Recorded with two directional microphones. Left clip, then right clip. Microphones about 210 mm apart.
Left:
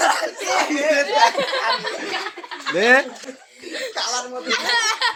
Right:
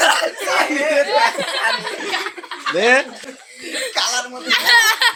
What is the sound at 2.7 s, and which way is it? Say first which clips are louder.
Speech: right 1 dB; 20° left (ahead or behind).